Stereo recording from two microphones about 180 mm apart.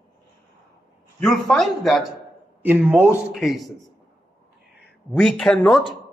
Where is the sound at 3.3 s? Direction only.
Centre (ahead or behind).